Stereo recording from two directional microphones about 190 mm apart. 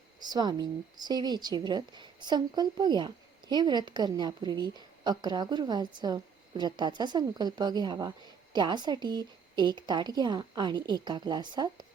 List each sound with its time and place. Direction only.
0.3 s a woman's voice: 20° right (ahead or behind)